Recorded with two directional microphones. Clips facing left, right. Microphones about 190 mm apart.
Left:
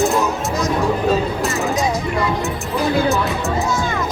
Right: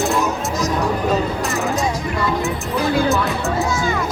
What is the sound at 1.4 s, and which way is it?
Music, centre (ahead or behind).